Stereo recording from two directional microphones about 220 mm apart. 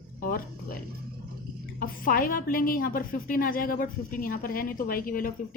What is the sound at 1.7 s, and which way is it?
A woman's voice, 40° left (ahead or behind).